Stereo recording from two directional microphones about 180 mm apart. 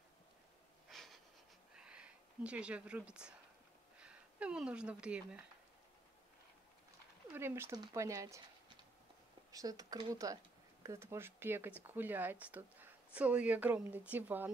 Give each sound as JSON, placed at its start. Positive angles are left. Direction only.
{"t": 0.8, "sound": "a sound", "side_deg": 0}
{"t": 4.0, "sound": "speech", "side_deg": -5}
{"t": 7.3, "sound": "speech", "side_deg": -15}
{"t": 9.5, "sound": "speech", "side_deg": -20}